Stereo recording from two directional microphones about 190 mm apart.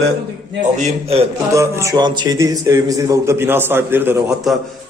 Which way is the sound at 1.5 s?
15° right (ahead or behind).